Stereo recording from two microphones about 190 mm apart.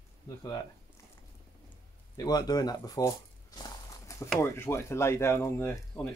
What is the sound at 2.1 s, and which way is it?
Speech, 20° left (ahead or behind).